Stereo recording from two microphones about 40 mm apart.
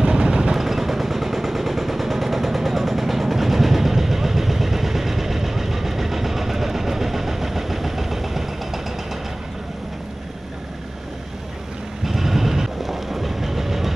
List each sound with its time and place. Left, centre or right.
0.0 s vehicle: right
0.6 s machine gun: centre
12.0 s train: centre